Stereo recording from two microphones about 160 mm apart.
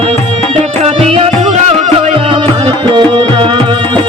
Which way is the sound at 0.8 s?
40° right (ahead or behind).